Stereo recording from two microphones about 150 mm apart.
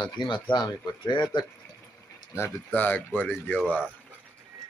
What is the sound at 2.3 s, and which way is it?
Speech, 15° left (ahead or behind).